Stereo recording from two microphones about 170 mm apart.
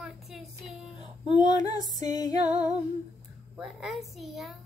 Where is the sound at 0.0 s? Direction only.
Centre (ahead or behind).